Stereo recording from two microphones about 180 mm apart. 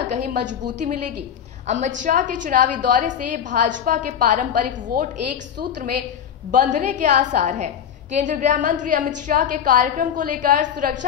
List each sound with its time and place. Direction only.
0.1 s a woman's voice: 40° right (ahead or behind)